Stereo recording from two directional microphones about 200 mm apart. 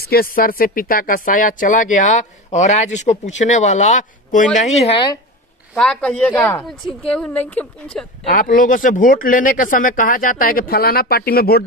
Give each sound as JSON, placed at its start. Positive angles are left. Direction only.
{"t": 0.0, "sound": "speech", "side_deg": 50}
{"t": 5.8, "sound": "a woman's voice", "side_deg": 5}
{"t": 8.3, "sound": "speech", "side_deg": 45}